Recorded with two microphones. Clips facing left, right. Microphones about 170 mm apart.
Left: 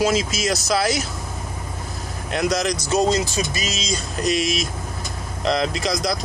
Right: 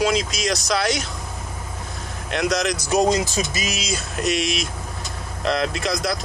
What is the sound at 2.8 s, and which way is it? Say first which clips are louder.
Speech: right 1 dB; 15° right (ahead or behind).